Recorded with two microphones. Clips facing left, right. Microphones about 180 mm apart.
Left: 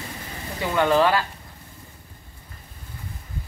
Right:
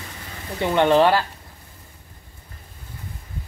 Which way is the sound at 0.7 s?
30° right (ahead or behind).